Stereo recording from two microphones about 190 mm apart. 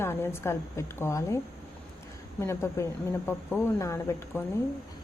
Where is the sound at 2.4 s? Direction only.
15° left (ahead or behind).